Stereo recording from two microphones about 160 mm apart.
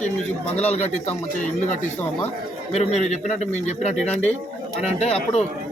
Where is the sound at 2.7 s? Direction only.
45° left (ahead or behind).